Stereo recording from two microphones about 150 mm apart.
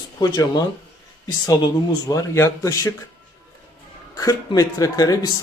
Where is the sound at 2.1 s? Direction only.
20° left (ahead or behind).